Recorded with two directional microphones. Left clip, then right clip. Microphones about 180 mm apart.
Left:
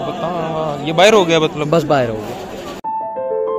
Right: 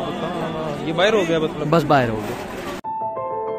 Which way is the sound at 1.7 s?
Centre (ahead or behind).